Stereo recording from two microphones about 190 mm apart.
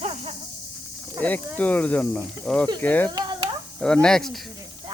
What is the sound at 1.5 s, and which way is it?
Speech, 10° left (ahead or behind).